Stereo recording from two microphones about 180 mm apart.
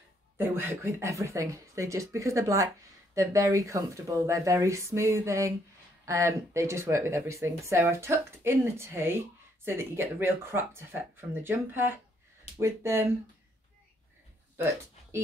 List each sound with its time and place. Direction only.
0.4 s speech: 15° right (ahead or behind)